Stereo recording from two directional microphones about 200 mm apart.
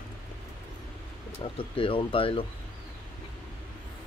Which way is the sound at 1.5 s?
25° left (ahead or behind).